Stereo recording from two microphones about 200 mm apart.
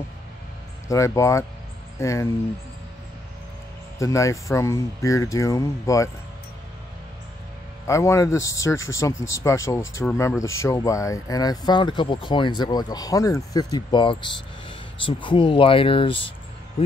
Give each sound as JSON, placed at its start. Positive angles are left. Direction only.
{"t": 0.8, "sound": "speech", "side_deg": 15}
{"t": 4.0, "sound": "speech", "side_deg": 15}
{"t": 7.8, "sound": "speech", "side_deg": 15}